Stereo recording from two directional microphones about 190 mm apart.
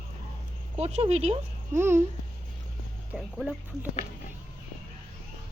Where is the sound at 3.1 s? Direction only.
5° right (ahead or behind).